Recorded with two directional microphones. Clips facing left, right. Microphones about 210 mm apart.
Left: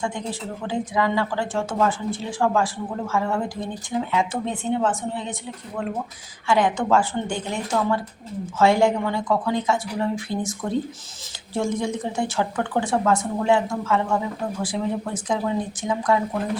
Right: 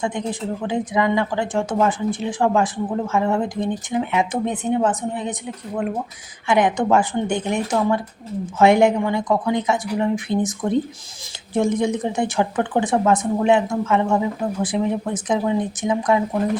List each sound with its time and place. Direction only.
0.0 s a woman's voice: 20° right (ahead or behind)
6.5 s a woman's voice: 20° right (ahead or behind)